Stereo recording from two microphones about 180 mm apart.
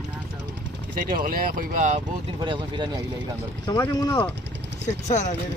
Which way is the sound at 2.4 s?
25° right (ahead or behind).